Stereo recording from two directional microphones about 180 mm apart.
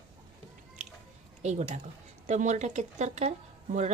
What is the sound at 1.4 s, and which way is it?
Speech, 40° right (ahead or behind).